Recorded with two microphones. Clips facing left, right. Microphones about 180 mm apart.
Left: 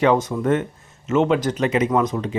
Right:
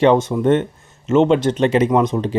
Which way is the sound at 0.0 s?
25° right (ahead or behind).